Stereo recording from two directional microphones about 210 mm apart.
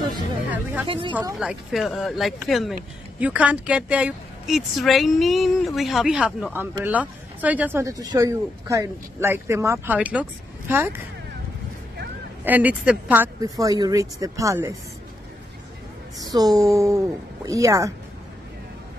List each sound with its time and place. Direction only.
0.5 s speech: 5° right (ahead or behind)
0.8 s speech: 25° right (ahead or behind)
1.1 s speech: 5° right (ahead or behind)
12.4 s speech: 10° right (ahead or behind)
16.2 s speech: 20° right (ahead or behind)